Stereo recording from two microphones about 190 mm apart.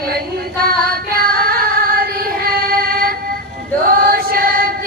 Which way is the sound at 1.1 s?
50° right (ahead or behind).